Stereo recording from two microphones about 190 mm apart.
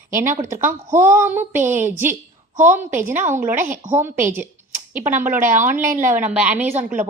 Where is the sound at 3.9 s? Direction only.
10° right (ahead or behind).